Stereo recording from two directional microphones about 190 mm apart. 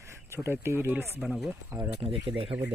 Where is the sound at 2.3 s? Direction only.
30° right (ahead or behind).